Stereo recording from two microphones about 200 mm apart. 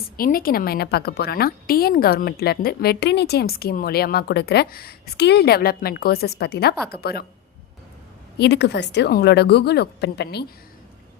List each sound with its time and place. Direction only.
0.2 s a woman's voice: 45° left (ahead or behind)
8.4 s a woman's voice: 55° left (ahead or behind)